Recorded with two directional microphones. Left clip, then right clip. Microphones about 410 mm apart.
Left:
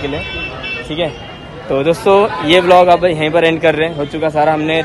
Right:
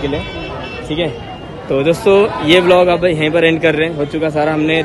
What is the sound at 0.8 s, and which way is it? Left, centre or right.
A man's voice, centre.